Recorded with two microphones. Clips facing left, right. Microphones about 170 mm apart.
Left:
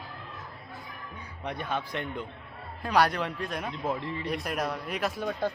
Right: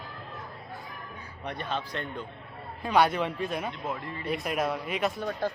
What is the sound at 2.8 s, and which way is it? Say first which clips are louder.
Speech: right 1 dB; centre (ahead or behind).